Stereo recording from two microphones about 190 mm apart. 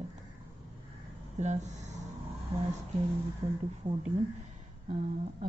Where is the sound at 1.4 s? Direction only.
35° right (ahead or behind).